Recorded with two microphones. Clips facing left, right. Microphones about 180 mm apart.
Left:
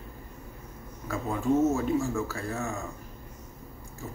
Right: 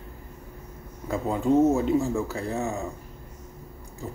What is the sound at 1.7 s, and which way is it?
Speech, 20° right (ahead or behind).